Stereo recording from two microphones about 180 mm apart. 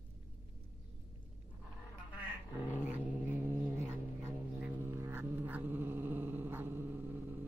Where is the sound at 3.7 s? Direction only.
10° right (ahead or behind).